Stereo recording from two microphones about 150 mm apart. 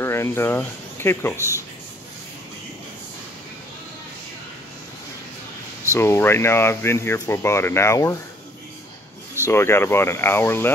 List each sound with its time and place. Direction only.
0.0 s speech: 15° left (ahead or behind)
5.9 s speech: 15° left (ahead or behind)
9.5 s speech: 15° left (ahead or behind)